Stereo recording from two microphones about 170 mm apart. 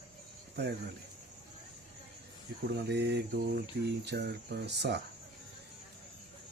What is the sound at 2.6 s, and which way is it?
Speech, 75° right (ahead or behind).